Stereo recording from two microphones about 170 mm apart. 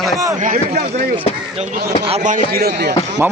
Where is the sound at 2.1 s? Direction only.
45° right (ahead or behind); by 3.2 s 80° right.